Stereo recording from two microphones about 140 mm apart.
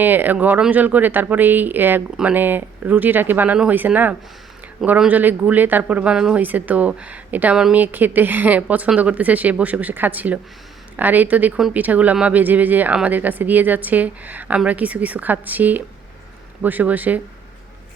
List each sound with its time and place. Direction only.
0.0 s speech: 15° right (ahead or behind)